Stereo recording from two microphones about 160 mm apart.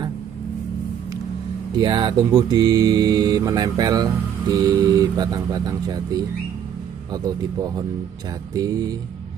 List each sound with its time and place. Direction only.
1.8 s speech: 30° right (ahead or behind)